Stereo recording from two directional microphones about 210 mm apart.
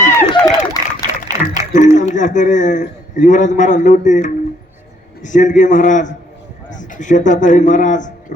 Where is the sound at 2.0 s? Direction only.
35° left (ahead or behind).